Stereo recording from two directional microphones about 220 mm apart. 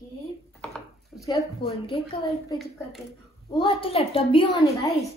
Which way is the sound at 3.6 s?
25° left (ahead or behind).